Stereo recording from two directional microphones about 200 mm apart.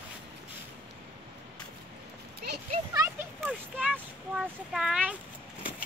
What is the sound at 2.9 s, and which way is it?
Speech, 15° right (ahead or behind).